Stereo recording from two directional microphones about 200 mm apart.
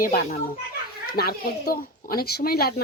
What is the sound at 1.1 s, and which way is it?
Speech, 50° left (ahead or behind).